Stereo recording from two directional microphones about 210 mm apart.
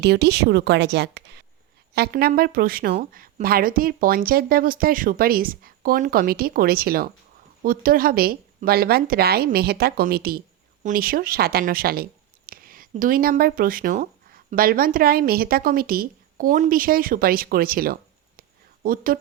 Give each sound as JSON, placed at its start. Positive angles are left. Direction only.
{"t": 0.0, "sound": "speech", "side_deg": -50}